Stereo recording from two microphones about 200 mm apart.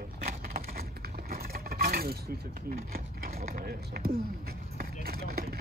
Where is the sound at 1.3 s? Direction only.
50° right (ahead or behind).